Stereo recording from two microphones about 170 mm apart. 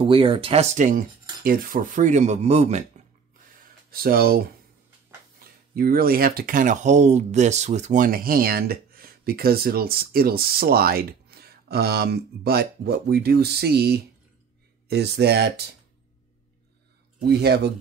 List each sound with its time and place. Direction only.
0.0 s speech: 30° right (ahead or behind)
3.9 s speech: 60° right (ahead or behind)
5.4 s speech: 60° right (ahead or behind)
17.3 s speech: 75° right (ahead or behind)